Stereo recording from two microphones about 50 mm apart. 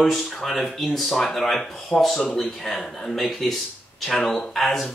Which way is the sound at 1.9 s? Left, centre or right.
Centre.